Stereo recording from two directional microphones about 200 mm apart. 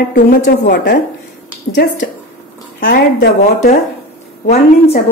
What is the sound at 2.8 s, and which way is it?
Speech, 55° left (ahead or behind).